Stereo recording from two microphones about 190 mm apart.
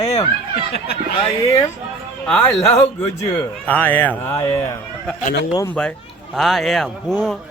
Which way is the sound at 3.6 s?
10° left (ahead or behind).